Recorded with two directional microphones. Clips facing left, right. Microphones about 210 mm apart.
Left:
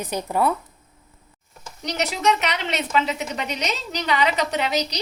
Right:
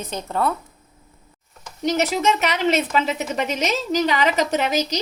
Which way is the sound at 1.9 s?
45° right (ahead or behind).